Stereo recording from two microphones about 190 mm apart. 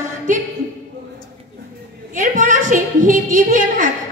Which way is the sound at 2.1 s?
45° right (ahead or behind).